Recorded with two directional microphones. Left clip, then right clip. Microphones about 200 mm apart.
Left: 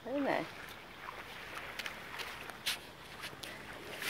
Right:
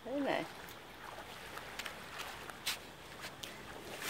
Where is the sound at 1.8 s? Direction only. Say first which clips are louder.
Left 1 dB; 5° left (ahead or behind).